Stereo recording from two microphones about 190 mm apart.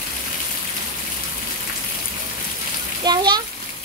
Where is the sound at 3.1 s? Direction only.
20° right (ahead or behind).